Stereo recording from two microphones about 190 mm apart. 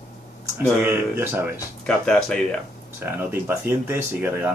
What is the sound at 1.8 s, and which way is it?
Speech, 5° left (ahead or behind).